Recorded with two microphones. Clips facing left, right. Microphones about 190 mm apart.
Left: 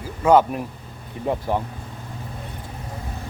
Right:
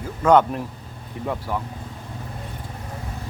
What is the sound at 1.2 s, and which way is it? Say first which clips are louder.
Speech: left 4 dB; 25° left (ahead or behind).